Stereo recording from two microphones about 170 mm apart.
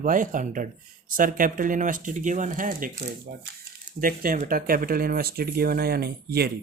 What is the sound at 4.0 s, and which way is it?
Speech, 55° right (ahead or behind).